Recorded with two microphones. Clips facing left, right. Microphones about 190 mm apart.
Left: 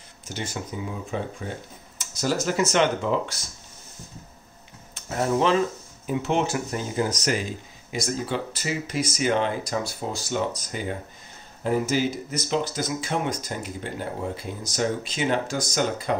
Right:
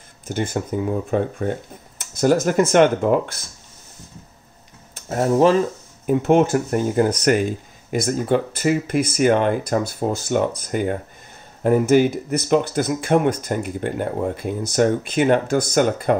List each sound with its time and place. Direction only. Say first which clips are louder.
0.3 s speech: right 9 dB; 50° right (ahead or behind)
4.9 s speech: right 5 dB; 45° right (ahead or behind)